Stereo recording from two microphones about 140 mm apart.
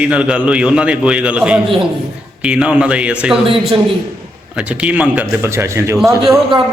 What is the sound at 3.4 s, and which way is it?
Speech, 40° right (ahead or behind).